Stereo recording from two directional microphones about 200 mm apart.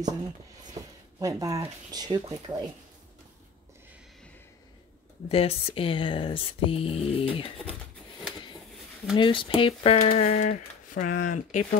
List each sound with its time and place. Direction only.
1.2 s speech: 15° right (ahead or behind)
5.3 s speech: 30° left (ahead or behind)
9.1 s speech: 25° left (ahead or behind); by 11.6 s 40° left (ahead or behind)